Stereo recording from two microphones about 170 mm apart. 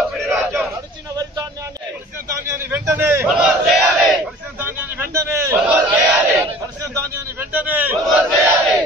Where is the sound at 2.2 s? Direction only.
15° right (ahead or behind).